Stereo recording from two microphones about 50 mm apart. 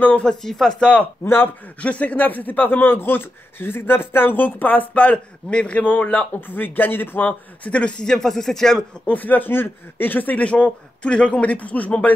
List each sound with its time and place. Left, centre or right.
0.2 s speech: centre
1.2 s speech: left
1.8 s speech: left
7.2 s speech: left
8.0 s speech: centre
9.0 s speech: left